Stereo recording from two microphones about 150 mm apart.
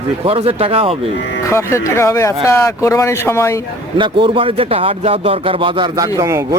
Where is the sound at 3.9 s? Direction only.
35° right (ahead or behind).